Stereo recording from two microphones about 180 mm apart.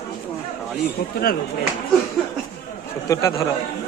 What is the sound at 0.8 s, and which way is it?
Speech, 60° left (ahead or behind).